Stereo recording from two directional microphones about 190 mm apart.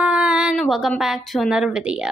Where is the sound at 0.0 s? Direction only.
5° right (ahead or behind).